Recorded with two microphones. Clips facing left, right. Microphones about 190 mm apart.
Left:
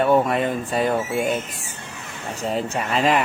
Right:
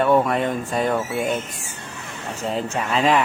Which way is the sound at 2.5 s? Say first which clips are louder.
Left 1 dB; 35° left (ahead or behind).